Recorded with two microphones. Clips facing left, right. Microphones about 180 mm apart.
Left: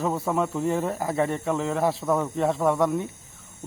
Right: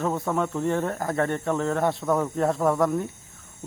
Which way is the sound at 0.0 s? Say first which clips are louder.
Even; centre (ahead or behind).